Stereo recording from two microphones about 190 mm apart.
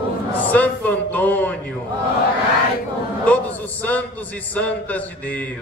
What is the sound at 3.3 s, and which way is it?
A man's voice, 10° left (ahead or behind).